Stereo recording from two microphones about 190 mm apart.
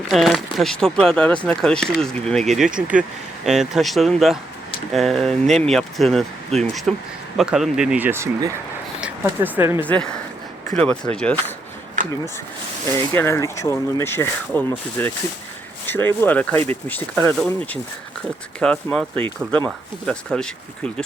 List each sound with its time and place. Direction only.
0.1 s speech: centre (ahead or behind)
9.8 s speech: 5° left (ahead or behind)
12.0 s a sound: 40° right (ahead or behind)
13.1 s speech: 15° left (ahead or behind)